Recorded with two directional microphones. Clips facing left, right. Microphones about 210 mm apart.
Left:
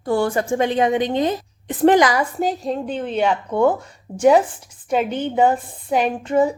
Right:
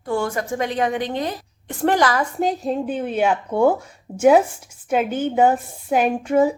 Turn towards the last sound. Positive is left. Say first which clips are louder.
# right 1 dB
turn(degrees=-10)  # may be behind; listen again after turning